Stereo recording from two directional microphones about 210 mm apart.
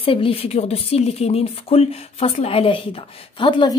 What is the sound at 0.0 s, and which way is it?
Speech, 25° left (ahead or behind).